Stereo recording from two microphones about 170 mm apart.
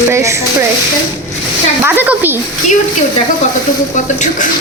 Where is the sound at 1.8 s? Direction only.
10° right (ahead or behind).